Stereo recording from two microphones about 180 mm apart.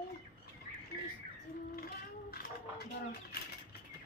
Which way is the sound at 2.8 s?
60° left (ahead or behind).